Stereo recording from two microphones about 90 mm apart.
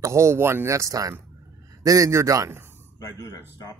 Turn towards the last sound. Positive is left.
turn(degrees=40)  # may be behind; listen again after turning